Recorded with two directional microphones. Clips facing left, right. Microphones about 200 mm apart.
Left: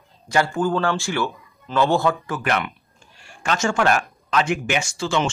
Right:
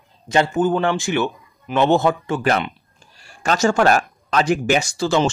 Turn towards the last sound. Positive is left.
turn(degrees=-35)  # may be behind; listen again after turning